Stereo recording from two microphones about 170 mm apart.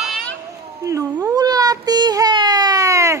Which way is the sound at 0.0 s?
Centre (ahead or behind).